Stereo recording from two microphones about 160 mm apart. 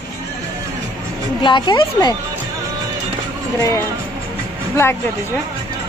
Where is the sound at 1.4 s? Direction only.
30° left (ahead or behind).